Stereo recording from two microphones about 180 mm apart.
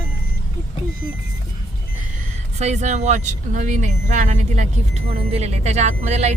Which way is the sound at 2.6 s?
40° right (ahead or behind).